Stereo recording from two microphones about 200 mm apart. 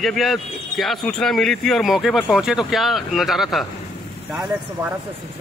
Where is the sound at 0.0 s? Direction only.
Centre (ahead or behind).